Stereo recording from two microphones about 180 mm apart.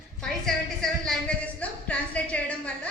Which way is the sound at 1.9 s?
5° left (ahead or behind).